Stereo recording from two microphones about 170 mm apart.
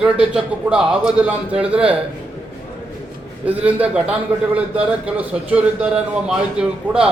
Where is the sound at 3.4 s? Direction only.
10° right (ahead or behind).